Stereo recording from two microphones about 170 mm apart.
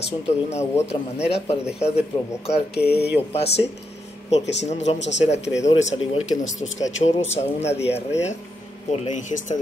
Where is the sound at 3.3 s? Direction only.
35° left (ahead or behind).